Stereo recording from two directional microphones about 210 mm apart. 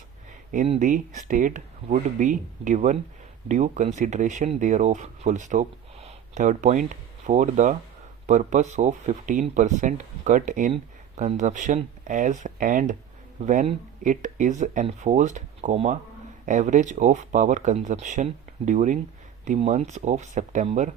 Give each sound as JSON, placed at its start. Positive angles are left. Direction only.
{"t": 0.7, "sound": "speech", "side_deg": -35}